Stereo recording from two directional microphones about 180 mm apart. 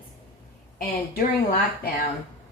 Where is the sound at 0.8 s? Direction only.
55° left (ahead or behind).